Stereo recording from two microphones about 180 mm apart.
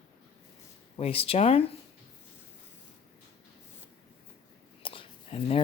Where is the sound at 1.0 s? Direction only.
30° left (ahead or behind).